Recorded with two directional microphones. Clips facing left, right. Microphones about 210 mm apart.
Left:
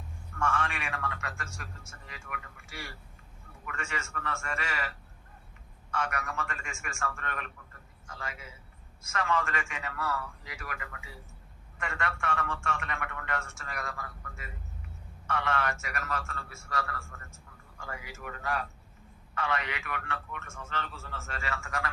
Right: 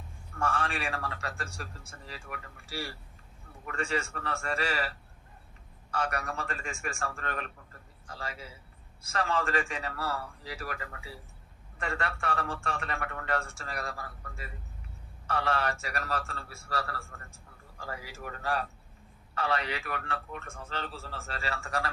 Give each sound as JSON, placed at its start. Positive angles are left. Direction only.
{"t": 0.3, "sound": "a man's voice", "side_deg": -35}